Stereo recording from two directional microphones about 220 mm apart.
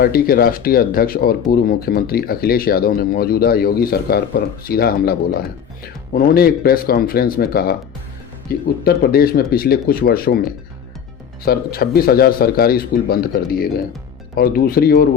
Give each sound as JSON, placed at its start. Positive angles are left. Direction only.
{"t": 0.0, "sound": "speech", "side_deg": 45}
{"t": 8.8, "sound": "speech", "side_deg": 45}
{"t": 11.4, "sound": "speech", "side_deg": 45}